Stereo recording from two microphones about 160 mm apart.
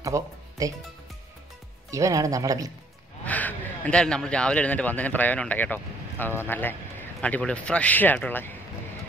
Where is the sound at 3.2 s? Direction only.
10° left (ahead or behind).